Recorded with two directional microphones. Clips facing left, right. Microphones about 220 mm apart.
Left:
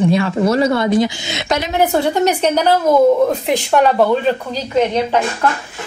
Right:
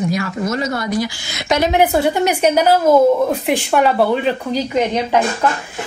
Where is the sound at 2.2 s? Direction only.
10° right (ahead or behind).